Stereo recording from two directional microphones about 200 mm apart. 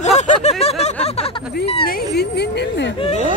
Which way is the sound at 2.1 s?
55° left (ahead or behind).